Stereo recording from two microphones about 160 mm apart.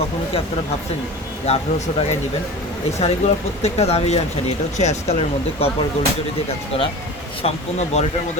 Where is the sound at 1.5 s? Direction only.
40° left (ahead or behind).